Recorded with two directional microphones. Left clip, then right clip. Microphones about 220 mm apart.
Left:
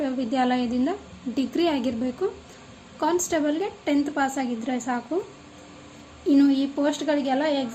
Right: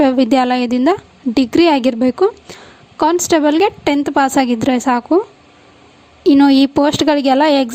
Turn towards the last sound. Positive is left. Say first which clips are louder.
# right 12 dB
turn(degrees=-50)  # may be behind; listen again after turning